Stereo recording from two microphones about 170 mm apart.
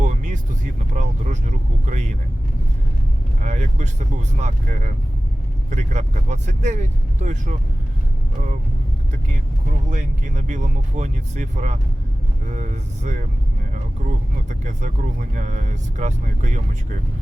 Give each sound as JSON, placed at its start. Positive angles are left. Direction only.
{"t": 0.0, "sound": "vehicle", "side_deg": -50}
{"t": 3.4, "sound": "vehicle", "side_deg": -45}
{"t": 4.4, "sound": "speech", "side_deg": -45}
{"t": 9.9, "sound": "speech", "side_deg": -45}
{"t": 14.6, "sound": "speech", "side_deg": -45}